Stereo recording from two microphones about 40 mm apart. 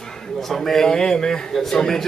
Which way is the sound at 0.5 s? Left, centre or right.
Centre.